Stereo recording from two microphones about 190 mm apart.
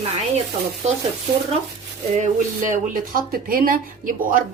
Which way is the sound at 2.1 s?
40° right (ahead or behind).